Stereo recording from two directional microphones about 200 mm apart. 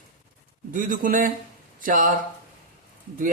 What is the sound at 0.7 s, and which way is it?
Speech, 40° right (ahead or behind).